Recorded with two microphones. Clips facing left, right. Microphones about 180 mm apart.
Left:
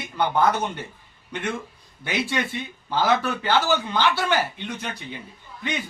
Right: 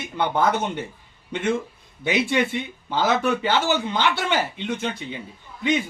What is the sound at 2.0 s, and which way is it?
A man's voice, 20° right (ahead or behind).